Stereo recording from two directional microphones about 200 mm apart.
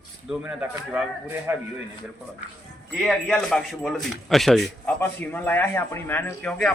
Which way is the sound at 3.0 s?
5° left (ahead or behind).